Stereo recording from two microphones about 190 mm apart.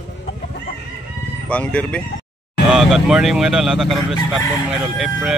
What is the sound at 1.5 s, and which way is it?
Speech, 5° left (ahead or behind).